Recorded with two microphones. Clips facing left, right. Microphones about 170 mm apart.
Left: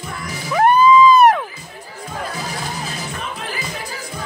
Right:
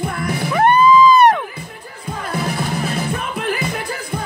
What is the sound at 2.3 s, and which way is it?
Music, 60° right (ahead or behind).